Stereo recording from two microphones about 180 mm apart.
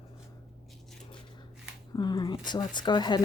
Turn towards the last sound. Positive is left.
turn(degrees=25)  # may be behind; listen again after turning